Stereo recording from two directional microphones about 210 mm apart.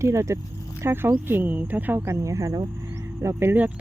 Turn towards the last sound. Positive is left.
turn(degrees=-10)  # may be behind; listen again after turning